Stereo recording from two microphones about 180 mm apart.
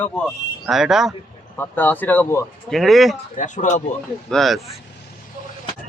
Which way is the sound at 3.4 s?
45° left (ahead or behind).